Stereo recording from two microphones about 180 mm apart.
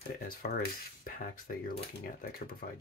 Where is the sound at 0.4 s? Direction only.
60° left (ahead or behind).